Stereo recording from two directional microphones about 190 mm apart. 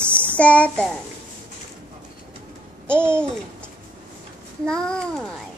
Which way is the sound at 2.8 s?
5° left (ahead or behind).